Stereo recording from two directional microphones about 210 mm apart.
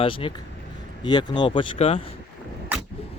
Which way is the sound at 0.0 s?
25° left (ahead or behind).